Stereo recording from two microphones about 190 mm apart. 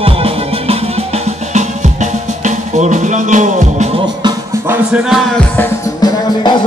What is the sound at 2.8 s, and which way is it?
Music, 40° right (ahead or behind).